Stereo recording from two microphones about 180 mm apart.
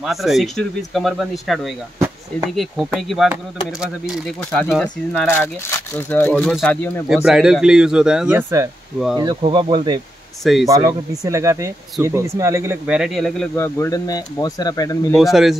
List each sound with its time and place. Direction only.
0.0 s speech: centre (ahead or behind)
7.2 s speech: 5° right (ahead or behind); by 9.8 s 25° right (ahead or behind)
10.4 s speech: centre (ahead or behind)
10.7 s speech: 20° right (ahead or behind)
12.8 s speech: 5° right (ahead or behind)
13.6 s speech: 15° left (ahead or behind)
15.1 s speech: centre (ahead or behind)